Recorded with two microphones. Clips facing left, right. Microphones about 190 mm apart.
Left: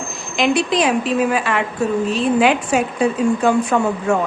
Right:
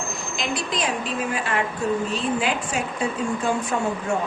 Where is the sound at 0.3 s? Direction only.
75° left (ahead or behind).